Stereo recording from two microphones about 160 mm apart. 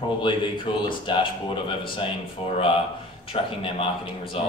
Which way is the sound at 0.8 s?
30° left (ahead or behind).